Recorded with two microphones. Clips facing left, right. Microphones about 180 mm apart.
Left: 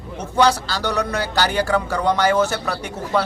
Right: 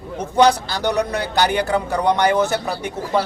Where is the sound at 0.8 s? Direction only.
60° right (ahead or behind).